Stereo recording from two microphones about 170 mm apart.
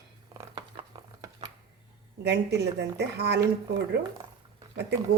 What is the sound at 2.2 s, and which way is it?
Speech, 75° right (ahead or behind).